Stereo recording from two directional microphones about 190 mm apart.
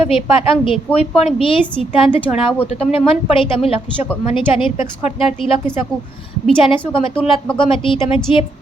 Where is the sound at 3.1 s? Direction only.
30° left (ahead or behind).